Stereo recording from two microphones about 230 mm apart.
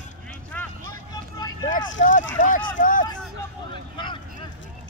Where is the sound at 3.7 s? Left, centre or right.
Left.